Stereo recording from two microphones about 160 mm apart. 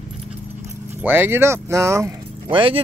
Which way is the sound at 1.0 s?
10° right (ahead or behind).